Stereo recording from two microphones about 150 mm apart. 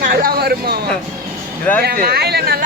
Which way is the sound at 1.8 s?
85° right.